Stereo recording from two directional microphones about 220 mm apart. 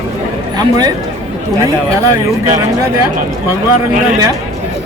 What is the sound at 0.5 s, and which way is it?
Speech, 15° right (ahead or behind).